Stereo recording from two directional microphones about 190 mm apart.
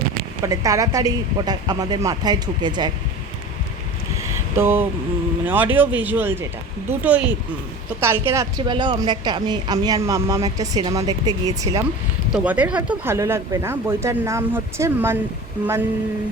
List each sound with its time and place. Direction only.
0.4 s speech: 15° right (ahead or behind)
4.2 s a sound: 15° right (ahead or behind)
5.5 s speech: 10° right (ahead or behind)
12.3 s speech: 5° right (ahead or behind)